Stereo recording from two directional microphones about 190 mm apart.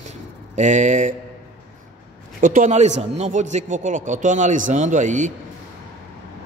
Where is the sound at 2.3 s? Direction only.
45° right (ahead or behind).